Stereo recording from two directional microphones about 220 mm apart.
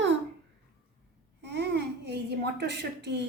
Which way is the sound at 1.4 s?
50° right (ahead or behind).